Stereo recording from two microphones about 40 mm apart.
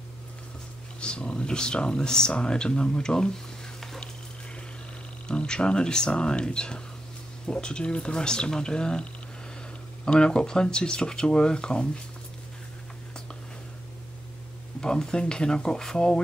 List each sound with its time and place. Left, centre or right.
1.0 s speech: left
5.3 s speech: left
10.0 s speech: left
14.8 s speech: centre